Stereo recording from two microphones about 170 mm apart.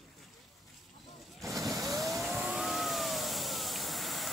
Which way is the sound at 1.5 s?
Centre (ahead or behind).